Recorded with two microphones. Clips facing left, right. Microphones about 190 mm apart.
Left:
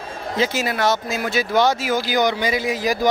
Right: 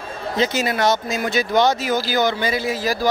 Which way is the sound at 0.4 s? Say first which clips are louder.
Right 1 dB; 5° left (ahead or behind).